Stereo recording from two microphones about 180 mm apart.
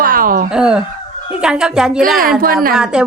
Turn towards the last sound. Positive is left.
turn(degrees=-5)  # may be behind; listen again after turning